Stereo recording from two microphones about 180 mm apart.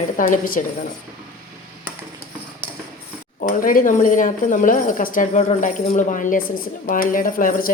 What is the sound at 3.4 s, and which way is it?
A woman's voice, 45° left (ahead or behind).